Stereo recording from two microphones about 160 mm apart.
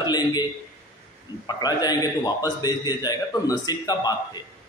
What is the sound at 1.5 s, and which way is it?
A man's voice, 25° left (ahead or behind).